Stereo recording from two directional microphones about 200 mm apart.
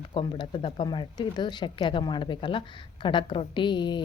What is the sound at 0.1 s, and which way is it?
Speech, 25° left (ahead or behind).